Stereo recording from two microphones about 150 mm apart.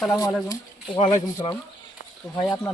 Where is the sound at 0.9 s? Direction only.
45° left (ahead or behind).